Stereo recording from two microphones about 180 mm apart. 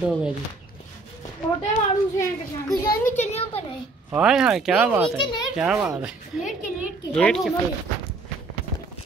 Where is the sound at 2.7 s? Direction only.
20° left (ahead or behind).